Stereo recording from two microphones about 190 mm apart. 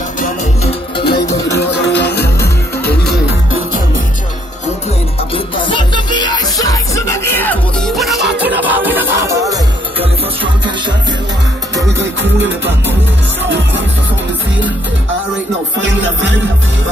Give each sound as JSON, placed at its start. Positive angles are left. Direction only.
{"t": 0.7, "sound": "music", "side_deg": 25}
{"t": 1.9, "sound": "music", "side_deg": 60}
{"t": 5.3, "sound": "music", "side_deg": 25}
{"t": 12.0, "sound": "music", "side_deg": -70}
{"t": 15.8, "sound": "music", "side_deg": -70}